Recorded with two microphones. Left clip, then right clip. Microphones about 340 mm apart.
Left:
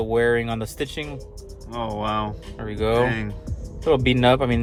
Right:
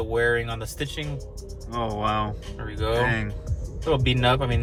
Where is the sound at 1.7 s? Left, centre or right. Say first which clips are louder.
Even; centre.